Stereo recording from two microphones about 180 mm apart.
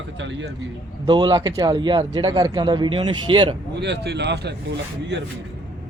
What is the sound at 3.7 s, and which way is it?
Speech, 70° right (ahead or behind).